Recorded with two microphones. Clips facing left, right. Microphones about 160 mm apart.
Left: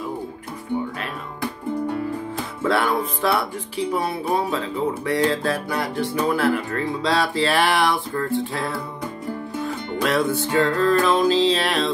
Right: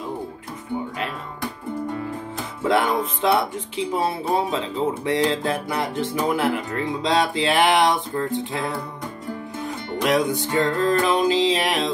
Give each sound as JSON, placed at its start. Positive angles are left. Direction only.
{"t": 2.6, "sound": "speech", "side_deg": -20}
{"t": 9.9, "sound": "music", "side_deg": -15}